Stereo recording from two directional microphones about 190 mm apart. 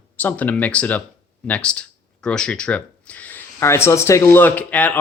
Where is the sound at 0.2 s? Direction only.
10° left (ahead or behind).